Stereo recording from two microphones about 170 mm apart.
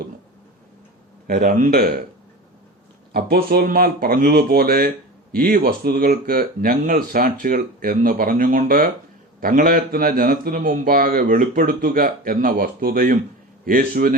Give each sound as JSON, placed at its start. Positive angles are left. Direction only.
{"t": 1.3, "sound": "a man's voice", "side_deg": -55}
{"t": 3.1, "sound": "a man's voice", "side_deg": -65}